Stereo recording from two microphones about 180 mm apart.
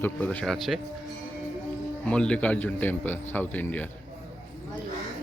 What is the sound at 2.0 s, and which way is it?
A man's voice, 5° left (ahead or behind).